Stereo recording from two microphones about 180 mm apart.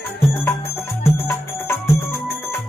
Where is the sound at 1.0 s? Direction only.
15° left (ahead or behind).